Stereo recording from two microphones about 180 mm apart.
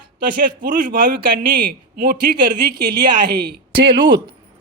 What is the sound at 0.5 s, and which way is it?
A man's voice, 50° right (ahead or behind).